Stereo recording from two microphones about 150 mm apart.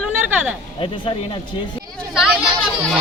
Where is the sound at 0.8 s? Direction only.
35° left (ahead or behind).